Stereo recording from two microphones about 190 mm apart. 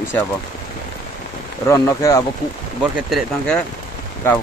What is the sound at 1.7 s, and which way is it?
Speech, 15° left (ahead or behind).